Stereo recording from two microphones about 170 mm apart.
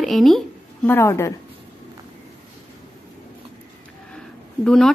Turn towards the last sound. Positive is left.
turn(degrees=5)  # may be behind; listen again after turning